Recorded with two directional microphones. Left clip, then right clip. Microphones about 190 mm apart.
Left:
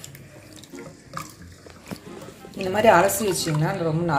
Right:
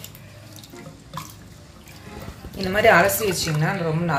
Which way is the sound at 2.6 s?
25° left (ahead or behind).